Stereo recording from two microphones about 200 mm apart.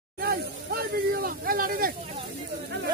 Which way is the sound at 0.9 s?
50° right (ahead or behind).